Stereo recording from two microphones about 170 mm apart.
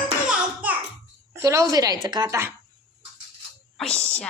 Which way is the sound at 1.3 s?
15° right (ahead or behind).